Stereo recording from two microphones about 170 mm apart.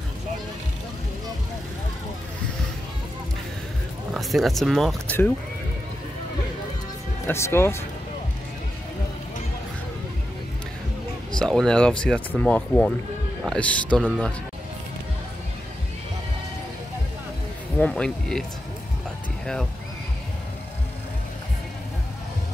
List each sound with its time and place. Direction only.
4.1 s speech: centre (ahead or behind)
7.2 s speech: 15° left (ahead or behind)
11.3 s speech: 5° left (ahead or behind)
17.7 s speech: 5° left (ahead or behind)